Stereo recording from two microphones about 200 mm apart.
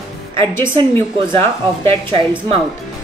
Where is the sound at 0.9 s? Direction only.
10° left (ahead or behind).